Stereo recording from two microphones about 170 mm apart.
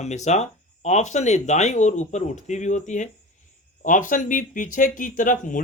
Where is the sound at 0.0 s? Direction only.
40° left (ahead or behind).